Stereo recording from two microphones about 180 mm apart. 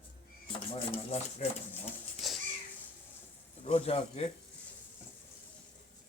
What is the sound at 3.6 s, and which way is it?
Speech, 35° left (ahead or behind).